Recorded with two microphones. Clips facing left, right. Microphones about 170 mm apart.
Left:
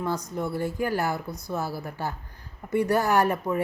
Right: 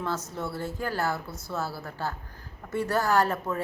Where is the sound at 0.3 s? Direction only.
15° left (ahead or behind).